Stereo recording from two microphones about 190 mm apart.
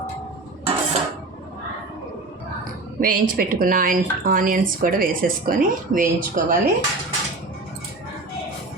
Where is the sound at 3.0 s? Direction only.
45° right (ahead or behind).